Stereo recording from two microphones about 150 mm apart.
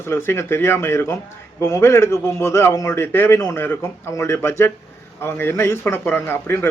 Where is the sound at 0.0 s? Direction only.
15° left (ahead or behind).